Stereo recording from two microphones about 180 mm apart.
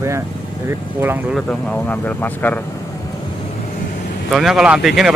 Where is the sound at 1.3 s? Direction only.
5° left (ahead or behind).